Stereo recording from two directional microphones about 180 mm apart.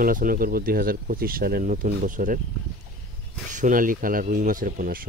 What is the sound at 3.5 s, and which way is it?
Speech, 45° right (ahead or behind).